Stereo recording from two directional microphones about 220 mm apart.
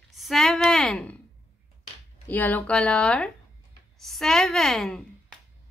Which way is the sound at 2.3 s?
10° left (ahead or behind).